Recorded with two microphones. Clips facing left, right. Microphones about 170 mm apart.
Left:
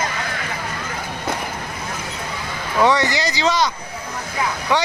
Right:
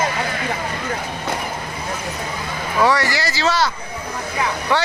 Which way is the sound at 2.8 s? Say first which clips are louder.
Left 1 dB; 20° left (ahead or behind).